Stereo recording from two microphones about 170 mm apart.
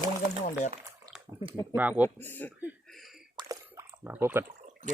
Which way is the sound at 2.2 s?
10° left (ahead or behind).